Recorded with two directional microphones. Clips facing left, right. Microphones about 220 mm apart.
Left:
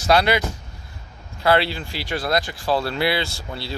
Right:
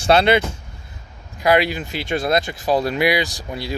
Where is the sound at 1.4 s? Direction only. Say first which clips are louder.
Right 2 dB; 15° right (ahead or behind).